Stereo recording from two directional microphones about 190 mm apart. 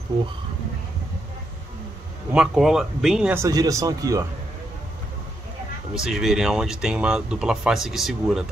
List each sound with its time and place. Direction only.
2.3 s speech: 5° right (ahead or behind)
3.4 s speech: 15° right (ahead or behind)
5.9 s speech: centre (ahead or behind)